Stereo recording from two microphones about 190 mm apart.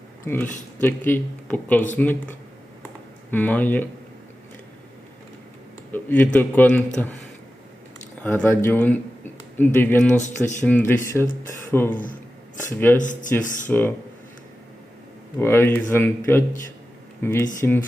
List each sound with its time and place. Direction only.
0.8 s speech: 10° left (ahead or behind)
3.3 s speech: 10° left (ahead or behind)
5.9 s speech: 10° left (ahead or behind)
8.2 s speech: 10° left (ahead or behind)
13.0 s speech: 40° left (ahead or behind)
13.7 s speech: 10° left (ahead or behind)
15.4 s speech: 10° left (ahead or behind)